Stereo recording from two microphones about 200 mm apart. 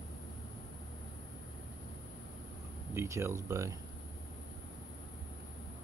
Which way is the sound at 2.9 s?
15° right (ahead or behind).